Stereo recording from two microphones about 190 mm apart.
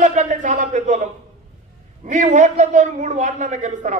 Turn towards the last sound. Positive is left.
turn(degrees=-40)  # may be behind; listen again after turning